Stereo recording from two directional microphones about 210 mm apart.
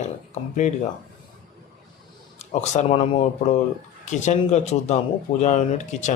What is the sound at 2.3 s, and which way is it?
Speech, 30° left (ahead or behind).